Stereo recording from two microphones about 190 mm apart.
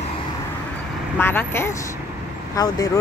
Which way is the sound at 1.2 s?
10° left (ahead or behind).